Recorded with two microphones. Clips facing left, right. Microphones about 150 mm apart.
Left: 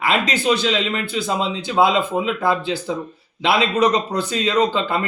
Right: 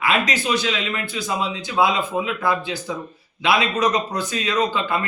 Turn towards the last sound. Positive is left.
turn(degrees=30)  # may be behind; listen again after turning